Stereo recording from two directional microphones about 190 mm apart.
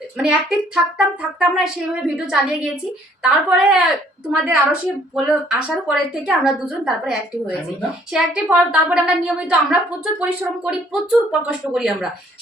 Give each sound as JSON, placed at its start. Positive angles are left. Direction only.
{"t": 0.9, "sound": "a woman's voice", "side_deg": -5}